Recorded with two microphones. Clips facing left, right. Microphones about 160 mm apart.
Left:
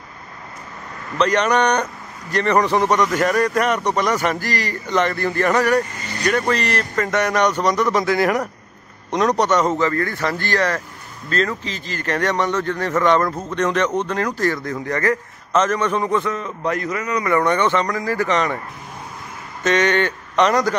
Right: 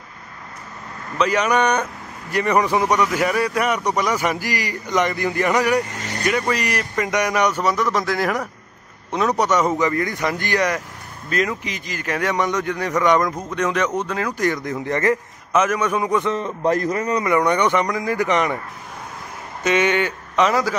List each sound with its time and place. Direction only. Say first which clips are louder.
1.1 s speech: left 1 dB; 5° right (ahead or behind)
14.4 s speech: even; 20° right (ahead or behind)
15.5 s speech: left 1 dB; 10° right (ahead or behind)
16.3 s a man's voice: right 3 dB; 30° right (ahead or behind)
17.2 s speech: left 1 dB; 15° right (ahead or behind)
19.6 s speech: left 1 dB; 10° right (ahead or behind)